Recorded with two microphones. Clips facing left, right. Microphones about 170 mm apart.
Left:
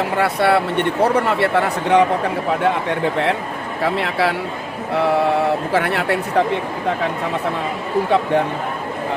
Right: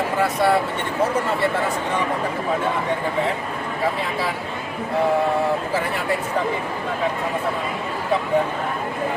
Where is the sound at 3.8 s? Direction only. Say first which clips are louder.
Left 5 dB; 70° left (ahead or behind).